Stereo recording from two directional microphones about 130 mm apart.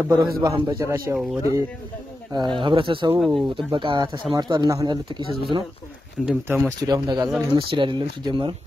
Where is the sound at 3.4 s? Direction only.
40° right (ahead or behind).